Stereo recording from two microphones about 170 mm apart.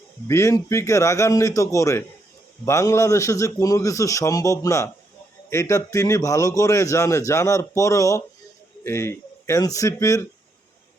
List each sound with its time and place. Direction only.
0.3 s a man's voice: 15° left (ahead or behind)